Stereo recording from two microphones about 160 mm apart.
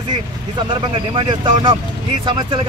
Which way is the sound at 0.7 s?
30° right (ahead or behind).